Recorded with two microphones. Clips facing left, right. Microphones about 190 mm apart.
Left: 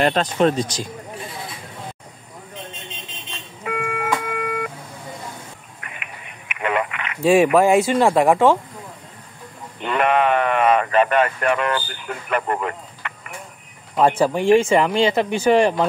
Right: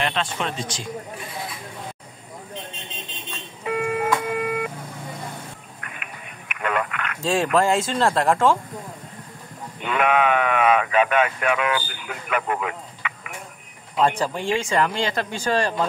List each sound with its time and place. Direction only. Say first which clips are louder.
0.0 s speech: left 9 dB; 40° left (ahead or behind)
3.6 s a sound: right 2 dB; 30° right (ahead or behind)
4.4 s vehicle: even; 20° right (ahead or behind)
6.7 s speech: left 2 dB; 10° left (ahead or behind)
9.9 s speech: left 2 dB; centre (ahead or behind)
14.0 s speech: left 6 dB; 15° left (ahead or behind)